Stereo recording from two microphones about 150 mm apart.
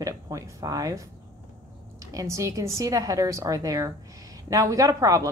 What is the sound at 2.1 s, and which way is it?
A woman's voice, 20° right (ahead or behind).